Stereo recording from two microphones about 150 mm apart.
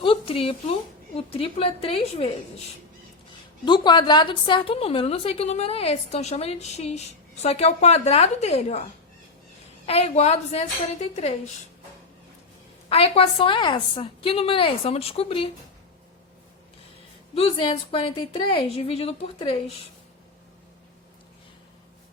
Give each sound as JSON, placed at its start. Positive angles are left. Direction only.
{"t": 0.0, "sound": "speech", "side_deg": 35}
{"t": 3.7, "sound": "a woman's voice", "side_deg": 30}
{"t": 9.8, "sound": "a woman's voice", "side_deg": 45}
{"t": 12.9, "sound": "a woman's voice", "side_deg": 40}
{"t": 17.3, "sound": "a woman's voice", "side_deg": 35}